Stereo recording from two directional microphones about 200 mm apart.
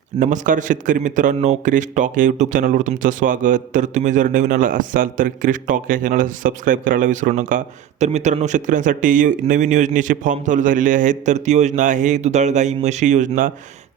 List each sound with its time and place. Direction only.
0.2 s a man's voice: 40° right (ahead or behind)